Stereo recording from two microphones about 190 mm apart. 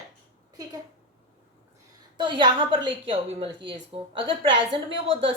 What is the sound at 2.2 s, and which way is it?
A woman's voice, 25° right (ahead or behind).